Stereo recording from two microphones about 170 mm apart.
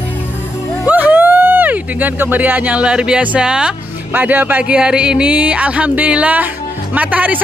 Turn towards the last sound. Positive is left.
turn(degrees=-10)  # may be behind; listen again after turning